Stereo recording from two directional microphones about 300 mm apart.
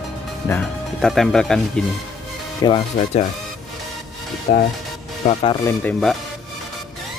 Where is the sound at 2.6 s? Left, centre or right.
Centre.